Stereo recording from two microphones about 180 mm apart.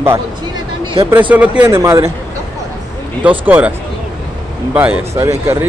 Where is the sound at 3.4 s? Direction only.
10° right (ahead or behind).